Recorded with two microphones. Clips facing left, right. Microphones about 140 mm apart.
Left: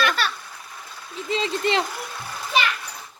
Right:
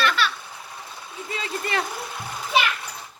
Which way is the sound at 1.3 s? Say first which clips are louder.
Left 5 dB; 25° left (ahead or behind).